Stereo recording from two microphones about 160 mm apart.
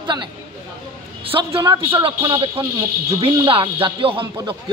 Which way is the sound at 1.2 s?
35° right (ahead or behind).